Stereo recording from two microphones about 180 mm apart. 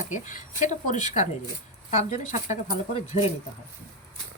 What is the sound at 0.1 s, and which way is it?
Speech, 45° left (ahead or behind).